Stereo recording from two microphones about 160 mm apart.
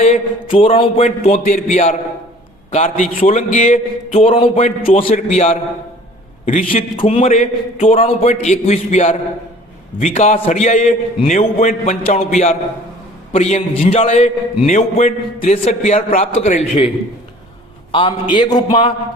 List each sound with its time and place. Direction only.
0.0 s a man's voice: 40° left (ahead or behind)
4.1 s a man's voice: 35° left (ahead or behind); by 6.7 s 50° left (ahead or behind)
6.7 s a man's voice: 35° left (ahead or behind)
17.9 s a man's voice: 30° left (ahead or behind)
18.7 s a man's voice: 35° left (ahead or behind)